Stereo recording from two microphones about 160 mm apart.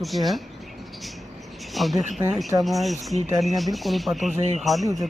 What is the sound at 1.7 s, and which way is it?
Speech, centre (ahead or behind).